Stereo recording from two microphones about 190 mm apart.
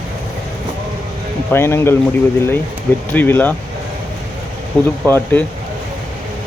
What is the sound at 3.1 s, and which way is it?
Speech, 10° left (ahead or behind).